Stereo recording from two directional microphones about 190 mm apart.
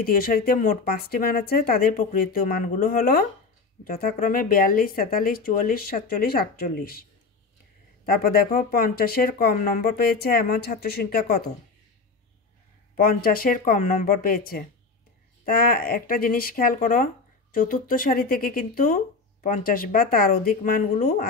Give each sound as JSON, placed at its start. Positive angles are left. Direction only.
{"t": 0.0, "sound": "speech", "side_deg": 50}
{"t": 12.9, "sound": "speech", "side_deg": 50}